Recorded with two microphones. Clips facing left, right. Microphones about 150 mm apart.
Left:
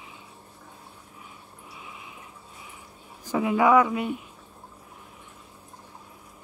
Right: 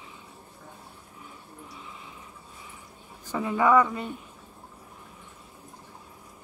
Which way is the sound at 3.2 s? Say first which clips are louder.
Left 2 dB; 15° left (ahead or behind).